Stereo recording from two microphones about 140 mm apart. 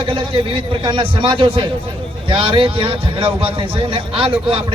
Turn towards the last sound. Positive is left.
turn(degrees=-40)  # may be behind; listen again after turning